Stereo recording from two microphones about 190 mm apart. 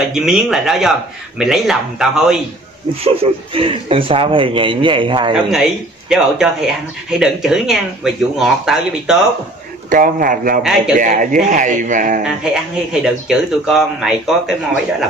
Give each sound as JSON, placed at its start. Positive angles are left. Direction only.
{"t": 0.1, "sound": "speech", "side_deg": -5}
{"t": 3.0, "sound": "a man's voice", "side_deg": -30}
{"t": 5.5, "sound": "speech", "side_deg": 0}
{"t": 9.8, "sound": "a man's voice", "side_deg": -45}
{"t": 13.0, "sound": "speech", "side_deg": -5}